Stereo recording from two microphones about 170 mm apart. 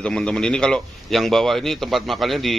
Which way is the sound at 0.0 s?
5° left (ahead or behind).